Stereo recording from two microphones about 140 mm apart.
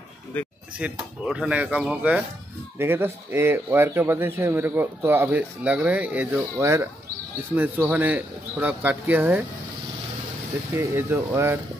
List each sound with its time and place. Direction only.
0.7 s a man's voice: 5° right (ahead or behind)
10.7 s a man's voice: 20° right (ahead or behind)